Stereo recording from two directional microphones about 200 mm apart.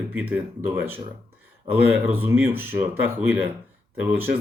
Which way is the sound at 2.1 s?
10° right (ahead or behind).